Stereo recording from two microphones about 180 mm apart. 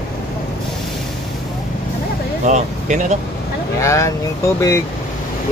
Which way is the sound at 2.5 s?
40° right (ahead or behind).